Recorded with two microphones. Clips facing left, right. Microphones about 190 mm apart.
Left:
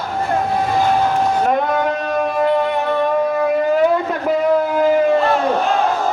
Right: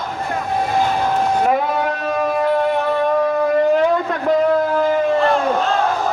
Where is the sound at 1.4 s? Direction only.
5° right (ahead or behind).